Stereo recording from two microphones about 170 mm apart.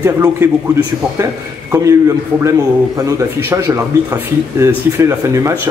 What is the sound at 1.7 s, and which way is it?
Speech, 20° right (ahead or behind).